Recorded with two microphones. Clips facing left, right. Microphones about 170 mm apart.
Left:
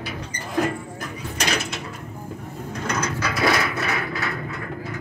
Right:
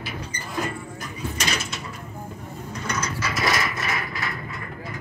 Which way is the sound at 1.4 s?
60° left (ahead or behind).